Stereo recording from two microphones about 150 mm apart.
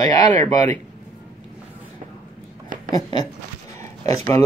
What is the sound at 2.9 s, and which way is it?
Speech, 30° left (ahead or behind).